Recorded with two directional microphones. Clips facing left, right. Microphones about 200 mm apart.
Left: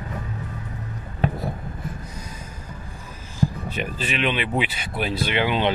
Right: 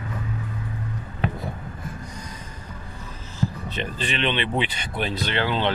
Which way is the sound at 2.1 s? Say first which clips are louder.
Even; 5° left (ahead or behind).